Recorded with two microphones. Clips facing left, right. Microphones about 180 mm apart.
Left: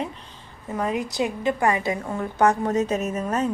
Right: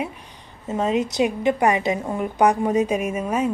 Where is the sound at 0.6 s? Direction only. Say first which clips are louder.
Right 4 dB; 20° right (ahead or behind).